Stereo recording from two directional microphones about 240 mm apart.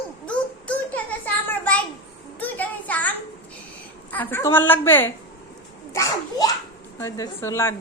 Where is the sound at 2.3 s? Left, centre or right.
Centre.